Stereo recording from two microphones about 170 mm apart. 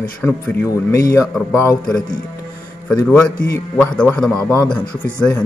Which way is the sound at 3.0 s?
5° left (ahead or behind).